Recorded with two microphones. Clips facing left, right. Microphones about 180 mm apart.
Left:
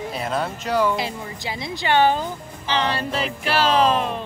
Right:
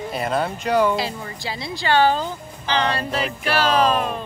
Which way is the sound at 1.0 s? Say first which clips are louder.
Right 1 dB; 20° left (ahead or behind).